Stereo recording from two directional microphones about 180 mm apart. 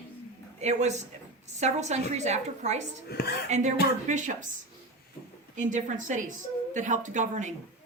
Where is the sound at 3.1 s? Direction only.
65° left (ahead or behind).